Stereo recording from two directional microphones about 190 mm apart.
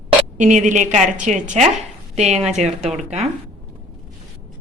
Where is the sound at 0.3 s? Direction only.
40° right (ahead or behind).